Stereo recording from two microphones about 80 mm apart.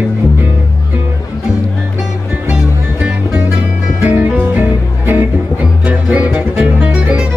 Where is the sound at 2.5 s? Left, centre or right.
Centre.